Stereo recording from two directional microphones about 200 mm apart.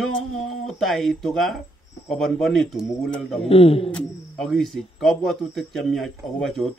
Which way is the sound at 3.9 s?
Centre (ahead or behind).